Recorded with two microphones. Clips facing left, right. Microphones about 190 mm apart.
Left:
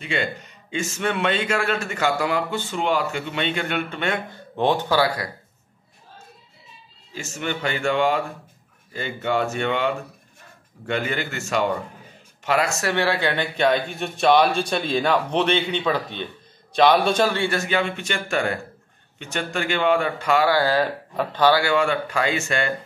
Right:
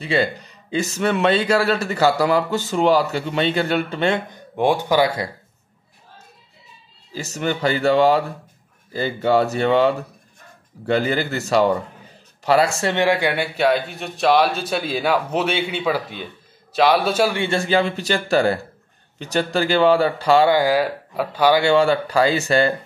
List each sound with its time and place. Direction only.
0.0 s speech: 35° right (ahead or behind)
4.3 s speech: 10° right (ahead or behind)
7.2 s speech: 35° right (ahead or behind)
12.9 s a man's voice: 15° right (ahead or behind)
17.4 s speech: 30° right (ahead or behind)
20.5 s speech: 15° right (ahead or behind)
21.5 s speech: 30° right (ahead or behind)